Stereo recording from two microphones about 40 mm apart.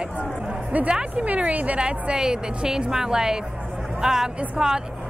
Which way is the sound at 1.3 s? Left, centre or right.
Right.